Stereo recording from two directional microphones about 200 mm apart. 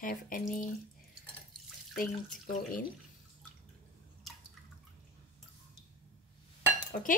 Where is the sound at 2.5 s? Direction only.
45° left (ahead or behind).